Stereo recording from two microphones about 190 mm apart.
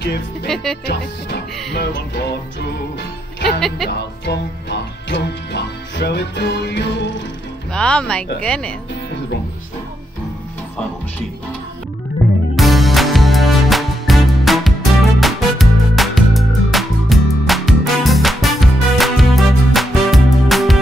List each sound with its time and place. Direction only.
0.8 s music: 60° left (ahead or behind)
3.6 s speech: centre (ahead or behind)
4.3 s music: 65° left (ahead or behind)
7.7 s speech: 5° left (ahead or behind)
12.5 s music: centre (ahead or behind)